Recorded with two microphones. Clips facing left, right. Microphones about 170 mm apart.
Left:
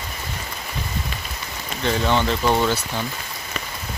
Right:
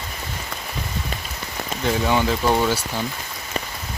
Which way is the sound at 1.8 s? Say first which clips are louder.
Even; 5° right (ahead or behind).